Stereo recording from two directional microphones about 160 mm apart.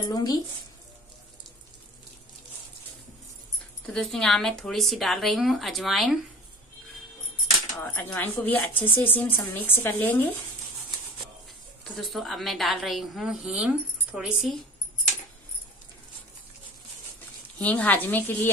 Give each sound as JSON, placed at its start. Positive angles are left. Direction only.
{"t": 0.0, "sound": "speech", "side_deg": 25}
{"t": 3.8, "sound": "a woman's voice", "side_deg": 0}
{"t": 7.8, "sound": "speech", "side_deg": 10}
{"t": 11.8, "sound": "a woman's voice", "side_deg": 0}
{"t": 17.6, "sound": "speech", "side_deg": 10}